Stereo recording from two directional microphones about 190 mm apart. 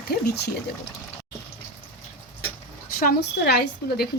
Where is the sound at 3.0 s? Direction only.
55° left (ahead or behind).